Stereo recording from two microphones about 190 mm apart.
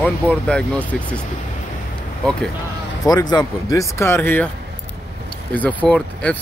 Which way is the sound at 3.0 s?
20° left (ahead or behind).